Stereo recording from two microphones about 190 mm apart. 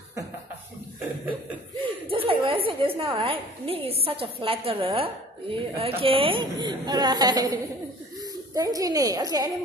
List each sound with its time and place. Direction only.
2.0 s a woman's voice: 30° right (ahead or behind)